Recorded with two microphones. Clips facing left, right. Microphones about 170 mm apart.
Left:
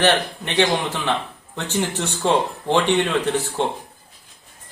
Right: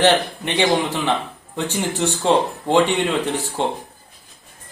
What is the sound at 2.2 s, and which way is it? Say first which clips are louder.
Speech: right 2 dB; 15° right (ahead or behind).